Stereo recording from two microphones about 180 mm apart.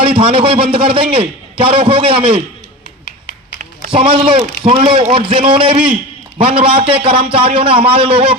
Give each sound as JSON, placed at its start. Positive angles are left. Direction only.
{"t": 0.0, "sound": "a man's voice", "side_deg": -30}
{"t": 3.8, "sound": "a man's voice", "side_deg": -30}